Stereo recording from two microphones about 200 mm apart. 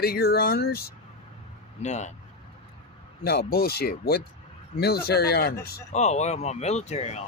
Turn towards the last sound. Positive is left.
turn(degrees=35)  # may be behind; listen again after turning